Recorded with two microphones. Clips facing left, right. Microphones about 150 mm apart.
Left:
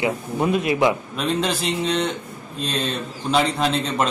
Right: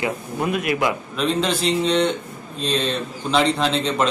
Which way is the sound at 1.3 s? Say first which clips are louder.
Right 1 dB; 5° left (ahead or behind).